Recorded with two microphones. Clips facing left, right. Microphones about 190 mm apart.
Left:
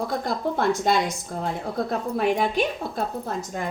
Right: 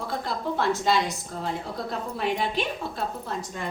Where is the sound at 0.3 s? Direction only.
50° left (ahead or behind).